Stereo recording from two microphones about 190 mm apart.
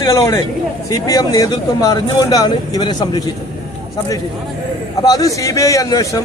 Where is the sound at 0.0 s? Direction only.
15° left (ahead or behind).